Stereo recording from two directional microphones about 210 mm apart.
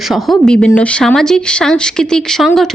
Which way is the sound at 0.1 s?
Centre (ahead or behind).